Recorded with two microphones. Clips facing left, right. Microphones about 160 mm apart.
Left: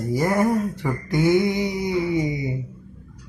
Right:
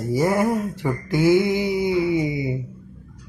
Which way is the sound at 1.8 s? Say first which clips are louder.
Right 1 dB; 25° right (ahead or behind).